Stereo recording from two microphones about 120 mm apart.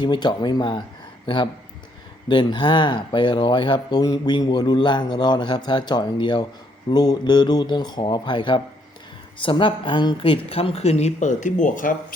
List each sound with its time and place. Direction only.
0.0 s a man's voice: 40° left (ahead or behind)
2.2 s a man's voice: 40° left (ahead or behind); by 11.9 s 90° left